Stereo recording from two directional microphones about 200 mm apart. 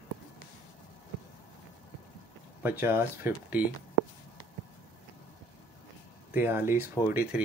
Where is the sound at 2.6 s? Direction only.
10° right (ahead or behind).